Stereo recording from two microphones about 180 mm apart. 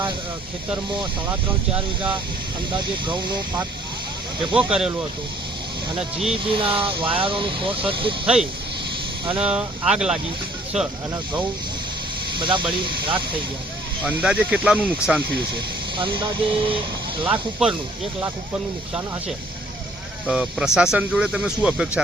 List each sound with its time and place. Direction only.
2.0 s speech: 25° right (ahead or behind)
4.5 s speech: 5° right (ahead or behind)
6.4 s speech: 30° right (ahead or behind)
9.4 s speech: 5° right (ahead or behind)
12.4 s speech: 25° right (ahead or behind)
14.0 s speech: 5° right (ahead or behind)
15.5 s speech: 30° right (ahead or behind)
17.6 s speech: 5° right (ahead or behind)
20.2 s speech: 5° right (ahead or behind)